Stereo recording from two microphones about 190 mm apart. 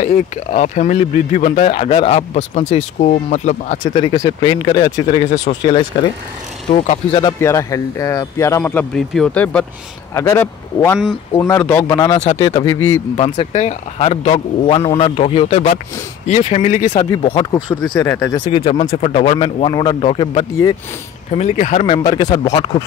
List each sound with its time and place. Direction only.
0.0 s speech: 40° left (ahead or behind)
3.9 s speech: 25° left (ahead or behind)
6.7 s speech: 30° left (ahead or behind)
7.3 s speech: 15° left (ahead or behind)
13.1 s speech: 30° left (ahead or behind)
17.9 s speech: 10° left (ahead or behind)
18.5 s speech: 30° left (ahead or behind)
22.0 s speech: 25° left (ahead or behind)